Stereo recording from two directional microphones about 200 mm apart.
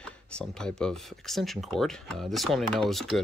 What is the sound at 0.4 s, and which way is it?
Speech, 5° left (ahead or behind).